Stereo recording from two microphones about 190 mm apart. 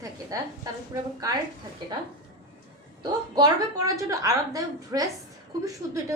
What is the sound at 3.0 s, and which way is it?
A woman's voice, 20° right (ahead or behind).